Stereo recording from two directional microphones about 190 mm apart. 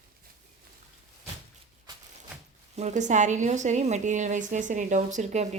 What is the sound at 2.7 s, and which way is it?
A woman's voice, 40° right (ahead or behind).